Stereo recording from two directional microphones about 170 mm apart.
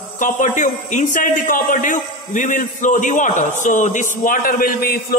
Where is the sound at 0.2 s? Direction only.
50° left (ahead or behind).